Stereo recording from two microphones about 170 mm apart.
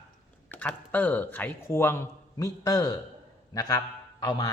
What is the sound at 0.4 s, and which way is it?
A man's voice, 10° left (ahead or behind).